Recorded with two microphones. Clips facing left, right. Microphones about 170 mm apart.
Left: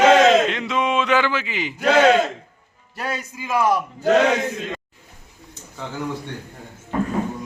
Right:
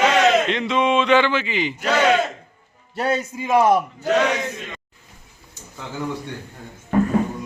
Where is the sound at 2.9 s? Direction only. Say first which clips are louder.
Right 6 dB; 25° right (ahead or behind).